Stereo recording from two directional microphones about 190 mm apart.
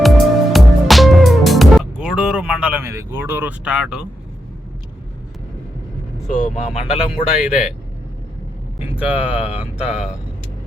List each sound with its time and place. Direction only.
0.5 s music: centre (ahead or behind)
3.1 s speech: 10° right (ahead or behind)
6.2 s speech: 45° left (ahead or behind)
7.1 s speech: 5° right (ahead or behind)
8.8 s speech: 5° right (ahead or behind)